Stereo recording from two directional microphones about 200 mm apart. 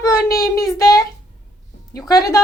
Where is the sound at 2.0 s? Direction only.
15° left (ahead or behind).